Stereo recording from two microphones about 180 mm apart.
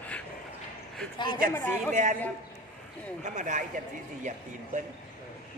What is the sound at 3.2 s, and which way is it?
Speech, 45° right (ahead or behind).